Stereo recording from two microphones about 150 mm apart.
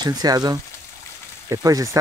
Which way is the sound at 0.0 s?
25° right (ahead or behind).